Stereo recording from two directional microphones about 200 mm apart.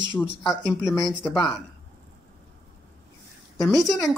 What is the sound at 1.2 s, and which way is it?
Speech, 5° left (ahead or behind).